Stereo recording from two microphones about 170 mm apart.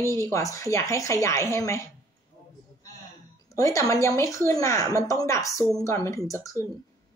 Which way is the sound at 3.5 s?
20° left (ahead or behind).